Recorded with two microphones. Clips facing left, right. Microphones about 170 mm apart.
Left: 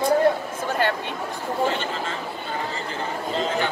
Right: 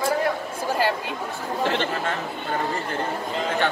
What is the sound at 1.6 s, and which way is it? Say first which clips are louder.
Speech: right 1 dB; 85° right.